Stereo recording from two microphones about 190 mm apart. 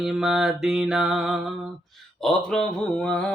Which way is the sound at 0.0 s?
Centre (ahead or behind).